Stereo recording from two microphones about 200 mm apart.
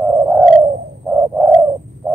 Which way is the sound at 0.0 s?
15° right (ahead or behind).